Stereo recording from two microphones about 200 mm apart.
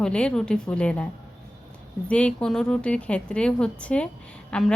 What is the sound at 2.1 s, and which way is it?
A woman's voice, 5° left (ahead or behind).